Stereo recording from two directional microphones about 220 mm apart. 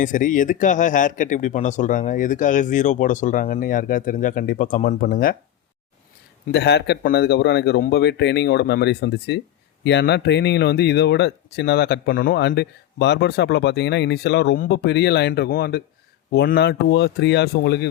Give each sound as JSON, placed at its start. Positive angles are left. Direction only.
{"t": 0.0, "sound": "speech", "side_deg": 35}
{"t": 6.5, "sound": "speech", "side_deg": 50}